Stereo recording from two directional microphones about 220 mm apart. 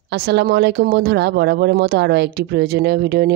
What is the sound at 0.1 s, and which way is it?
Speech, 50° right (ahead or behind).